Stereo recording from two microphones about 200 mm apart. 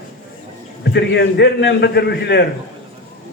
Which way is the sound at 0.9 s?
60° left (ahead or behind).